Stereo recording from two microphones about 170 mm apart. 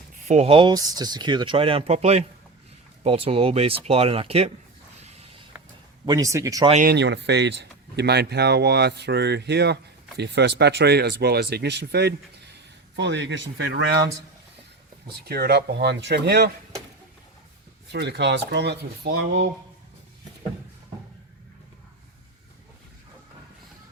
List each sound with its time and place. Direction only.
0.3 s speech: 40° right (ahead or behind)
6.1 s speech: 20° right (ahead or behind)
6.8 s speech: 85° right
13.0 s speech: 90° right
15.0 s speech: 70° right (ahead or behind)
17.9 s speech: 80° right